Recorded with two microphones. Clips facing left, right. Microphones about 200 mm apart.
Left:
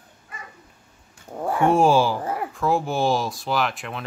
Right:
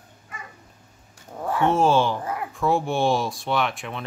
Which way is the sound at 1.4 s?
10° left (ahead or behind).